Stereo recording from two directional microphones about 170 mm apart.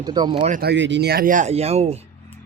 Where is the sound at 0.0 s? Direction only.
25° right (ahead or behind).